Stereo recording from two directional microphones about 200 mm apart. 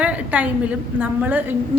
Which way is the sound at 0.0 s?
5° right (ahead or behind).